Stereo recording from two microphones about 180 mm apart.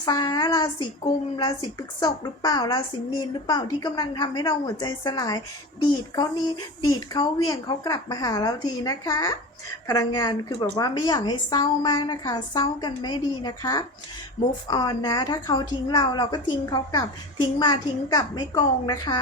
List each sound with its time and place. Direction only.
0.0 s a woman's voice: 20° left (ahead or behind)